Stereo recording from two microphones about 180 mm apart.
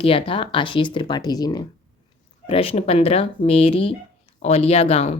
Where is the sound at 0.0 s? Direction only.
30° left (ahead or behind).